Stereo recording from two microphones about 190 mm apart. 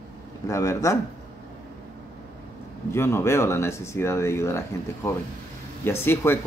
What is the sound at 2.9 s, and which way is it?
Speech, 15° left (ahead or behind).